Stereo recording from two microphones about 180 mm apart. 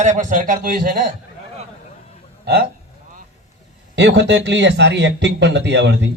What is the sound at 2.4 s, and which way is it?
Speech, 60° right (ahead or behind).